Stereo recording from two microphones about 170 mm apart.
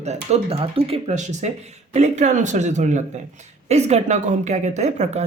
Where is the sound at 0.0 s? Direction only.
40° right (ahead or behind).